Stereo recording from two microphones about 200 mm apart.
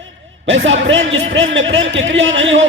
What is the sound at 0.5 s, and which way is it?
A man's voice, 70° right (ahead or behind).